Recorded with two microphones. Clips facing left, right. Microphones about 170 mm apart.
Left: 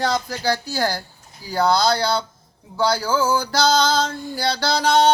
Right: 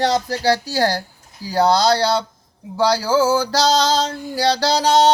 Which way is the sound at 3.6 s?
90° right.